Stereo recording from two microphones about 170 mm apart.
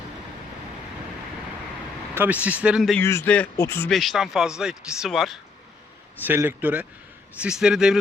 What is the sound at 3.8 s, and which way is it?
Speech, centre (ahead or behind).